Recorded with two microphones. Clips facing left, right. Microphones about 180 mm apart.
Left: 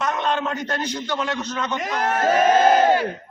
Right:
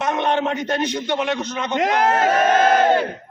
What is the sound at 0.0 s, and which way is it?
A man's voice, 20° right (ahead or behind).